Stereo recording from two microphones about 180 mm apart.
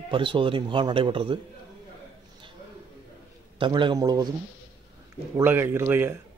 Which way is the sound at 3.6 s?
25° right (ahead or behind).